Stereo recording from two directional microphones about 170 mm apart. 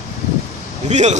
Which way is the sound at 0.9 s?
45° right (ahead or behind).